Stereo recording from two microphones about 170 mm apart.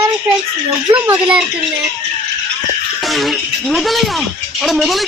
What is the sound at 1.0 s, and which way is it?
Speech, 10° right (ahead or behind).